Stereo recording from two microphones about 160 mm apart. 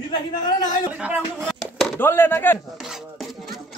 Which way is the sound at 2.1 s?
15° left (ahead or behind).